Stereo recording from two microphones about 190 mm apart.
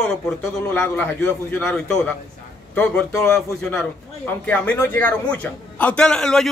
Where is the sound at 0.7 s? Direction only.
10° left (ahead or behind).